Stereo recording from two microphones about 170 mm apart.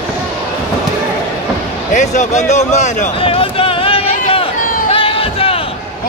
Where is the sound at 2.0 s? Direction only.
45° left (ahead or behind).